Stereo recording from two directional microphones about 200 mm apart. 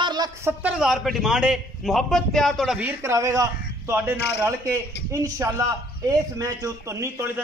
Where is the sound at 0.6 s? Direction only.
5° right (ahead or behind).